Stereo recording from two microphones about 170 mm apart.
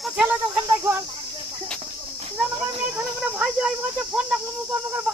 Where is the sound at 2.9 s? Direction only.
5° right (ahead or behind).